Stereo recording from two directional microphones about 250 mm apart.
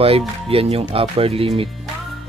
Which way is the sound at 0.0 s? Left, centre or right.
Right.